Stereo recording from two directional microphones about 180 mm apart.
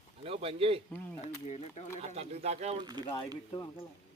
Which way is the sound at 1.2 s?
35° left (ahead or behind).